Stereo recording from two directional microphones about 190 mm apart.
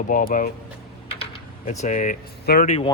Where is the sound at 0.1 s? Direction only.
45° left (ahead or behind).